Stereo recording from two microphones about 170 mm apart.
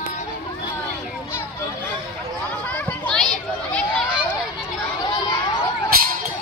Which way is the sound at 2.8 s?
5° left (ahead or behind).